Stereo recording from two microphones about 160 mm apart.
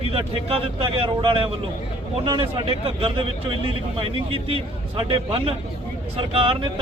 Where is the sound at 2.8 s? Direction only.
35° right (ahead or behind).